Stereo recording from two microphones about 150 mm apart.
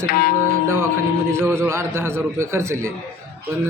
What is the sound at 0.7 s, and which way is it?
A man's voice, 15° right (ahead or behind).